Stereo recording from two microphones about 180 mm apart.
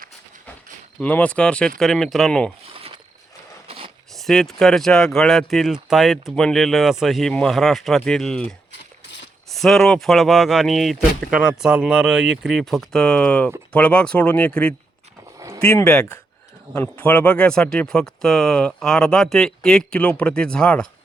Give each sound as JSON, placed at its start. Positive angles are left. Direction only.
{"t": 0.9, "sound": "speech", "side_deg": 10}
{"t": 2.7, "sound": "a sound", "side_deg": -30}
{"t": 3.7, "sound": "zipper", "side_deg": -30}
{"t": 4.2, "sound": "speech", "side_deg": 0}
{"t": 9.6, "sound": "speech", "side_deg": 0}
{"t": 15.4, "sound": "a sound", "side_deg": -15}
{"t": 15.8, "sound": "speech", "side_deg": 5}